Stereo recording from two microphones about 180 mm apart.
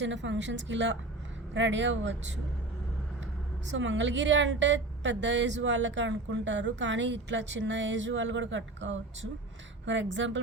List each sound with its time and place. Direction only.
0.0 s a woman's voice: 90° right
3.7 s a woman's voice: 90° right